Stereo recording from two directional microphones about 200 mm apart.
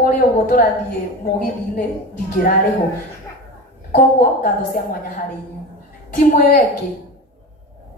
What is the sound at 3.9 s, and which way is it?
A woman's voice, 40° left (ahead or behind).